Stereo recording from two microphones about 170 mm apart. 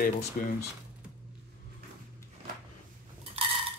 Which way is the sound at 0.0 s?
55° left (ahead or behind).